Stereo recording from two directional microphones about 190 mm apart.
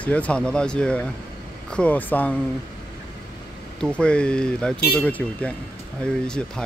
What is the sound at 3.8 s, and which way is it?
Speech, 5° left (ahead or behind).